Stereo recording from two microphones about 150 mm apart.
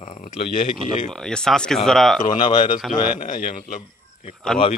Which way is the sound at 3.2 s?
65° left (ahead or behind).